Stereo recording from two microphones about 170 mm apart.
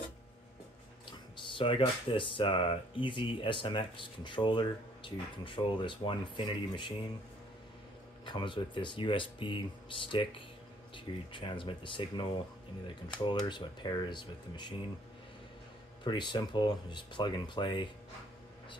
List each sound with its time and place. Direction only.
1.3 s speech: 30° left (ahead or behind)
8.3 s speech: 30° left (ahead or behind)
16.0 s speech: 25° left (ahead or behind)